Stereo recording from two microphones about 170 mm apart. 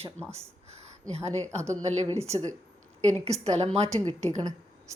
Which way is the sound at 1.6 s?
15° right (ahead or behind).